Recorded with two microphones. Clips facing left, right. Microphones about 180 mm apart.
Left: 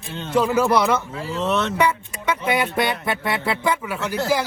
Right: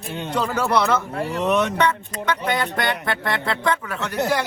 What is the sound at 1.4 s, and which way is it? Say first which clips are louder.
Speech: right 2 dB; 15° right (ahead or behind).